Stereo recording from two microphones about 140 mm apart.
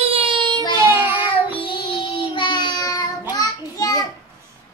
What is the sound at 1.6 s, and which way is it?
Child singing, 40° left (ahead or behind).